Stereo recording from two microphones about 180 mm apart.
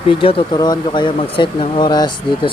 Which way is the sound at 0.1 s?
30° left (ahead or behind).